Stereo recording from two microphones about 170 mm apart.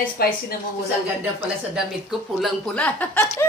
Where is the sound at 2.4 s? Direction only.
5° left (ahead or behind).